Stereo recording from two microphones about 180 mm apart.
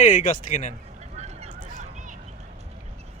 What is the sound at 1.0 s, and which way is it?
Vehicle, 40° right (ahead or behind).